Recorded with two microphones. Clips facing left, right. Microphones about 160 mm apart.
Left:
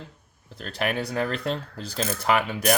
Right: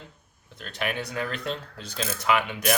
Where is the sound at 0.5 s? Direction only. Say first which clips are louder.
Left 3 dB; 35° left (ahead or behind).